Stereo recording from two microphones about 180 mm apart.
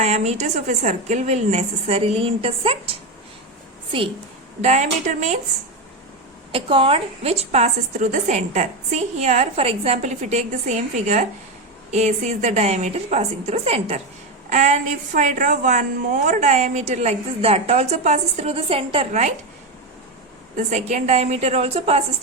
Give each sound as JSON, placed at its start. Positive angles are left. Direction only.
{"t": 0.0, "sound": "a woman's voice", "side_deg": -40}
{"t": 4.6, "sound": "a woman's voice", "side_deg": -40}
{"t": 6.5, "sound": "a woman's voice", "side_deg": -30}
{"t": 20.6, "sound": "a woman's voice", "side_deg": -40}